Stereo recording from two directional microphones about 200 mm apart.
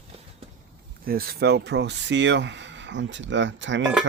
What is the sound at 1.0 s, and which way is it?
Speech, 50° right (ahead or behind).